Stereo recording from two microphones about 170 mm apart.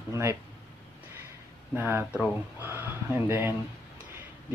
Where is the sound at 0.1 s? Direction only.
15° right (ahead or behind).